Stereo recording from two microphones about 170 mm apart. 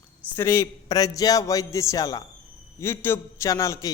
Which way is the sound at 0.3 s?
15° left (ahead or behind).